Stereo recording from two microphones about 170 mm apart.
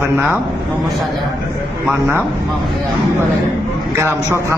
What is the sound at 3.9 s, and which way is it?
Speech, 15° right (ahead or behind).